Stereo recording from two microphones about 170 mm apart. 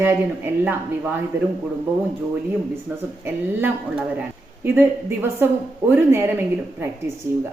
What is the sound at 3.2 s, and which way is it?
Speech, 15° right (ahead or behind).